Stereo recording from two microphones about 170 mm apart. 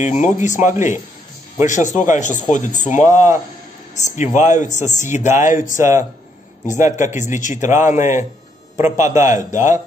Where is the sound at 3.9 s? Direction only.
45° left (ahead or behind).